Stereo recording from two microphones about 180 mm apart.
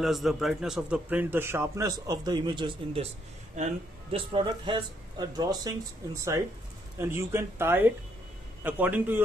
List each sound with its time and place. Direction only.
0.0 s a man's voice: centre (ahead or behind); by 5.7 s 20° right (ahead or behind)
7.0 s a man's voice: 15° right (ahead or behind)